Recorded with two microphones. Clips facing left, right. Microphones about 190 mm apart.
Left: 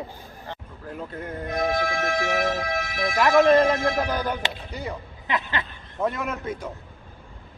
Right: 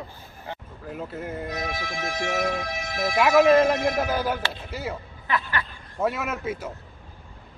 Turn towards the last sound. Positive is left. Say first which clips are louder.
# even
turn(degrees=-5)  # may be behind; listen again after turning